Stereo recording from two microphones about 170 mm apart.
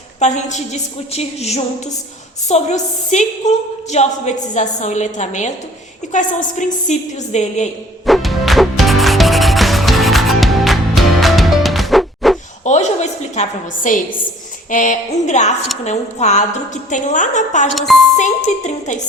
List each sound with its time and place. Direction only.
0.2 s a woman's voice: 45° left (ahead or behind)
8.0 s music: centre (ahead or behind)
12.6 s a sound: 45° left (ahead or behind)
14.7 s a woman's voice: 50° left (ahead or behind)
17.7 s music: centre (ahead or behind)
18.2 s a woman's voice: 45° left (ahead or behind)